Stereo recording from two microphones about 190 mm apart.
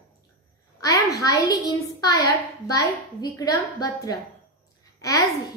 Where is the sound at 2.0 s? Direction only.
20° left (ahead or behind).